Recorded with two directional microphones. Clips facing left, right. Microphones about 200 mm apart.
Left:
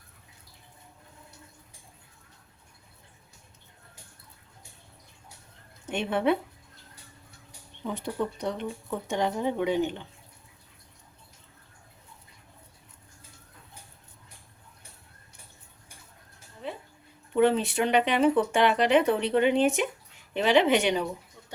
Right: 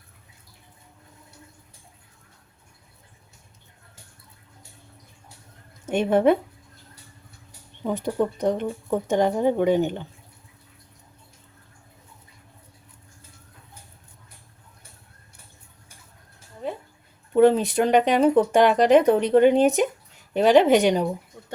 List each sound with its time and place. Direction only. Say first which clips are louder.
5.8 s speech: right 8 dB; 45° right (ahead or behind)
7.8 s speech: right 7 dB; 45° right (ahead or behind)
17.3 s speech: right 6 dB; 40° right (ahead or behind)
21.4 s a sound: right 7 dB; 45° right (ahead or behind)